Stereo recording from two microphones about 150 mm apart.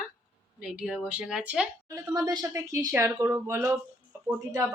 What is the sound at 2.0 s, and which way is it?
Speech, 25° right (ahead or behind).